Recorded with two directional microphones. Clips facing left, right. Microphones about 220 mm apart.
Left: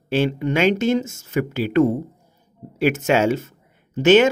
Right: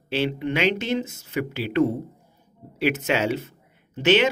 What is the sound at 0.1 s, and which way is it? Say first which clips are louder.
A man's voice: left 4 dB; 45° left (ahead or behind).